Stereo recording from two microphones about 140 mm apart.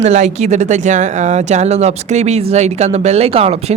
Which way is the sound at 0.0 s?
55° right (ahead or behind).